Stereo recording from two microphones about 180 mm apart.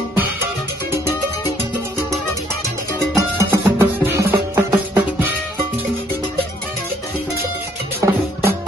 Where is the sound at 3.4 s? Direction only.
15° right (ahead or behind).